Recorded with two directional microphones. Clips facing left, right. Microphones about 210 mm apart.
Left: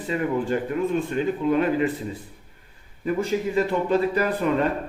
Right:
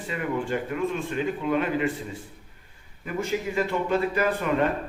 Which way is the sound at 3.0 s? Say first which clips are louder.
Left 4 dB; 35° left (ahead or behind).